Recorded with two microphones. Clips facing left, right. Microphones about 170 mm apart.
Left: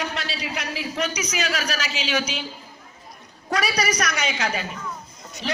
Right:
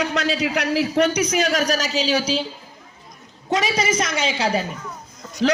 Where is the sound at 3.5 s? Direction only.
20° right (ahead or behind).